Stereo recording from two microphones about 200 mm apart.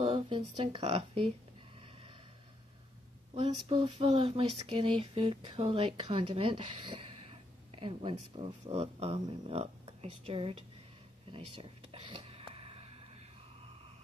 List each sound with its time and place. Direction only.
0.0 s speech: 25° right (ahead or behind)
3.3 s speech: 25° right (ahead or behind)
11.3 s a sound: 25° right (ahead or behind)